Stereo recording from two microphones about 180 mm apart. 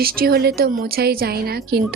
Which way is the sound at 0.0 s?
55° right (ahead or behind).